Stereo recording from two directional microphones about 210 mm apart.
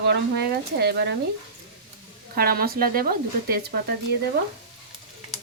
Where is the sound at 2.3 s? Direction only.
45° right (ahead or behind).